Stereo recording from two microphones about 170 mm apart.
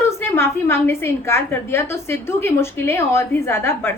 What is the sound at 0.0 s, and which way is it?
A woman's voice, 15° left (ahead or behind).